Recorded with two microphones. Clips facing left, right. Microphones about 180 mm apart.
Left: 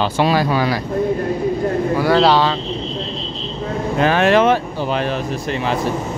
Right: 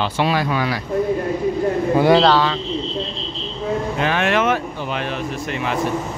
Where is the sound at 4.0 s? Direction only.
40° left (ahead or behind).